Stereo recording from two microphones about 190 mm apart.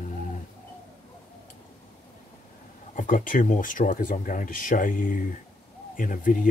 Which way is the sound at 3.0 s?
45° left (ahead or behind).